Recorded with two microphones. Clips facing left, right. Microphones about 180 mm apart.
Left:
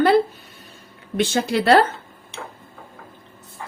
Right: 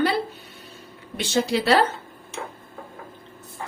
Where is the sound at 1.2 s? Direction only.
55° left (ahead or behind).